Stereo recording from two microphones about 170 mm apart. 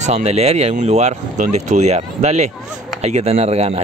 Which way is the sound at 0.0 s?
40° right (ahead or behind).